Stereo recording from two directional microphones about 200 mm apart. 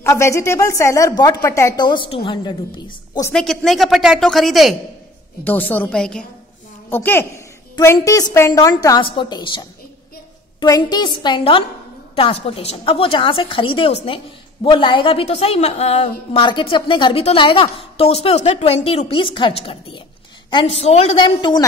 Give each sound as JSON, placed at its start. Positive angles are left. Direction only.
{"t": 0.0, "sound": "a woman's voice", "side_deg": 15}
{"t": 3.3, "sound": "a woman's voice", "side_deg": 5}